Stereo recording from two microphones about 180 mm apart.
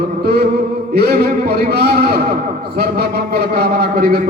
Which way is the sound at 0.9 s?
60° right (ahead or behind).